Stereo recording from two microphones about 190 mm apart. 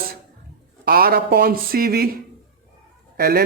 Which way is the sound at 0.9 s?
50° right (ahead or behind).